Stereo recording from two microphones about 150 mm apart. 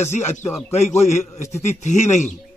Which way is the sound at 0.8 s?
50° left (ahead or behind).